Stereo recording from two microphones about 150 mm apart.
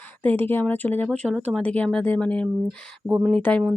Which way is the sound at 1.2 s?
5° right (ahead or behind).